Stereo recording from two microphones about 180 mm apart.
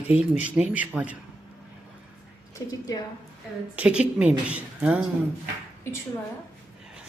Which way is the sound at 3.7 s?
5° right (ahead or behind).